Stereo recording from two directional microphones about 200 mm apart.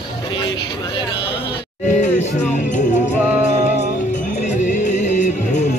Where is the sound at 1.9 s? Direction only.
35° left (ahead or behind).